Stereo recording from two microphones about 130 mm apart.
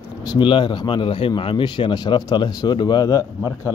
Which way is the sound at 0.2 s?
35° left (ahead or behind).